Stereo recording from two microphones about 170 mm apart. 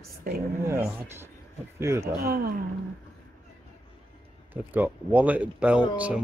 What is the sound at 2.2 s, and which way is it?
Speech, 60° right (ahead or behind).